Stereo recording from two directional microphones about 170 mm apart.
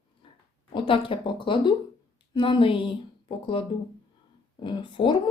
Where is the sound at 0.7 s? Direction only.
30° left (ahead or behind).